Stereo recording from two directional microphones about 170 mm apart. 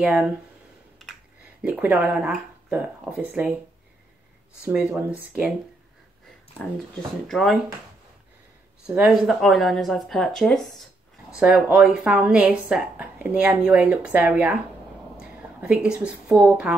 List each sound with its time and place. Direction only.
0.0 s a woman's voice: 5° right (ahead or behind)
1.6 s a woman's voice: 10° right (ahead or behind)
4.9 s a woman's voice: 10° right (ahead or behind)
7.2 s speech: centre (ahead or behind)
8.8 s a woman's voice: 5° right (ahead or behind)